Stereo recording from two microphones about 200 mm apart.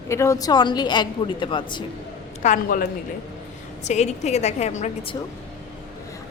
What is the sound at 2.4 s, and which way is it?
Speech, 40° left (ahead or behind).